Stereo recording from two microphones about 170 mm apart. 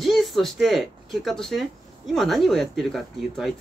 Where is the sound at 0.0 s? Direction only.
Centre (ahead or behind).